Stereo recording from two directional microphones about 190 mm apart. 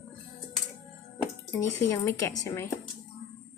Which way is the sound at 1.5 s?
15° left (ahead or behind).